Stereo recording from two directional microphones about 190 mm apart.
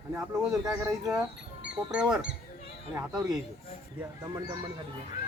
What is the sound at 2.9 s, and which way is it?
Speech, 20° right (ahead or behind).